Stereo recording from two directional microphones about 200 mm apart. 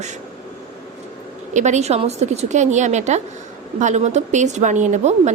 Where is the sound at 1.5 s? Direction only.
35° right (ahead or behind).